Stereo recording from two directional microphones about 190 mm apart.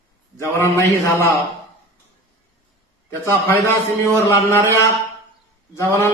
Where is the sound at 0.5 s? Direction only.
15° left (ahead or behind).